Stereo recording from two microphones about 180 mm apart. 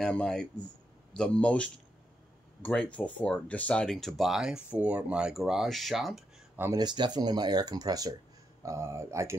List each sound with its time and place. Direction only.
0.0 s speech: 5° left (ahead or behind)
6.5 s speech: 10° right (ahead or behind)
6.8 s speech: 25° right (ahead or behind)